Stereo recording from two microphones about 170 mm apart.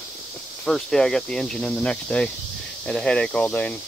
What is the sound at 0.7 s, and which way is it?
Speech, centre (ahead or behind).